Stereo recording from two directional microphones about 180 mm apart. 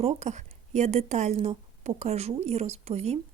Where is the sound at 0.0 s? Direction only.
40° right (ahead or behind).